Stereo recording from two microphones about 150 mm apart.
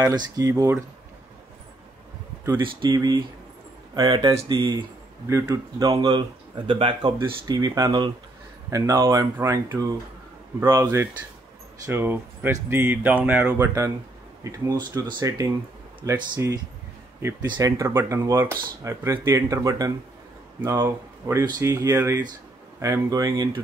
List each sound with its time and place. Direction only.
0.0 s speech: 20° right (ahead or behind)
2.6 s speech: 30° right (ahead or behind)